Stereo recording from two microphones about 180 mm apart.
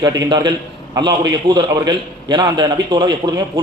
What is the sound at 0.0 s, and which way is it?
A man's voice, 25° right (ahead or behind).